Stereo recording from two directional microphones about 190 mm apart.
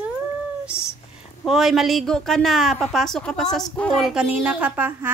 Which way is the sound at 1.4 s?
Centre (ahead or behind).